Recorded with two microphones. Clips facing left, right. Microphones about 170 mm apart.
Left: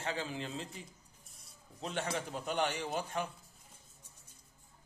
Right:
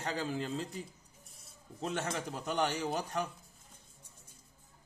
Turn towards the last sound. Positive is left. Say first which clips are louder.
# right 2 dB
turn(degrees=-40)  # may be behind; listen again after turning